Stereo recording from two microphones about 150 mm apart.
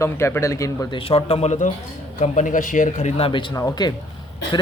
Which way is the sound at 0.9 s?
35° left (ahead or behind).